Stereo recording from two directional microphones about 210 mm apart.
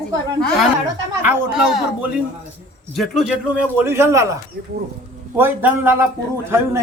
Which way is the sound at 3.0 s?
Centre (ahead or behind).